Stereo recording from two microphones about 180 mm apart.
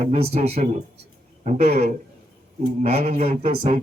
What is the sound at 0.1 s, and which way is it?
Speech, 35° right (ahead or behind).